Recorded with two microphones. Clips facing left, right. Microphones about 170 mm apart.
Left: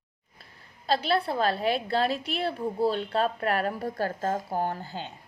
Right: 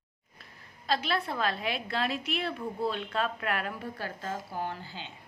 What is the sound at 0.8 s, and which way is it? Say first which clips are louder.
A woman's voice: left 5 dB; 30° left (ahead or behind).